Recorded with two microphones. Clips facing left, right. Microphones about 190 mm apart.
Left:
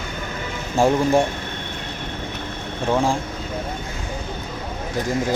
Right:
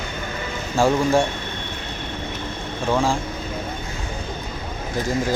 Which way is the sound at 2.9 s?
20° left (ahead or behind).